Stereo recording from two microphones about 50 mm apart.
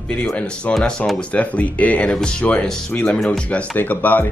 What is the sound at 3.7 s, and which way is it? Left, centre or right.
Speech, left.